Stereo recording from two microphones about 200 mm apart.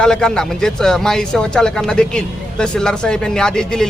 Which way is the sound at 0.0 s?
5° left (ahead or behind).